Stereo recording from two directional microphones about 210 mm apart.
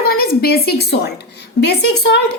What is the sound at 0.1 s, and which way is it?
A woman's voice, 45° left (ahead or behind).